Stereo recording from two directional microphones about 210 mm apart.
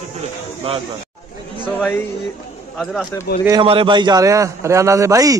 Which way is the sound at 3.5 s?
25° right (ahead or behind).